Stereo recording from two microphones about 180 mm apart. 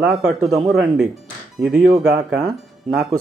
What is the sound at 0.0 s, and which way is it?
Speech, 5° right (ahead or behind).